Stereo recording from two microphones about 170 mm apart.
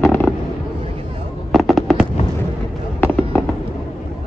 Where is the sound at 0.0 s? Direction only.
10° left (ahead or behind).